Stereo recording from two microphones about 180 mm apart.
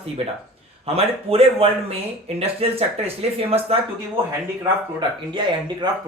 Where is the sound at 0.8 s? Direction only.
35° right (ahead or behind).